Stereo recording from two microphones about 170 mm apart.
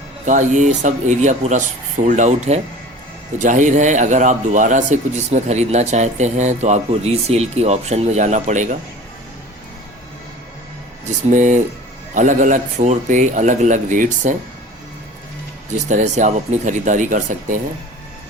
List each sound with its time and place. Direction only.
0.3 s speech: 45° right (ahead or behind)
11.3 s speech: 45° right (ahead or behind)
15.7 s speech: 45° right (ahead or behind)